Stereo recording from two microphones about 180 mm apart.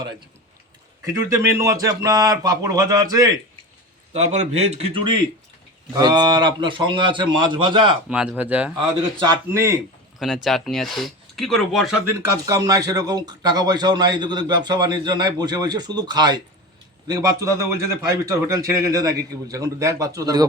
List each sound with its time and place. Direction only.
1.1 s speech: 15° right (ahead or behind)
4.1 s a man's voice: 40° right (ahead or behind)
8.1 s a man's voice: 5° right (ahead or behind)
10.2 s speech: centre (ahead or behind)
12.0 s a man's voice: 15° right (ahead or behind)